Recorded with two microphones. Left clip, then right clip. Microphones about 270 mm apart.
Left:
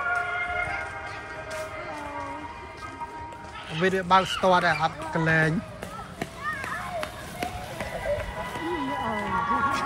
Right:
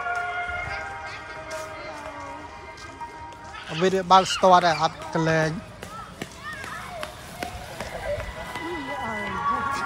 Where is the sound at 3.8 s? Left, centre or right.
Centre.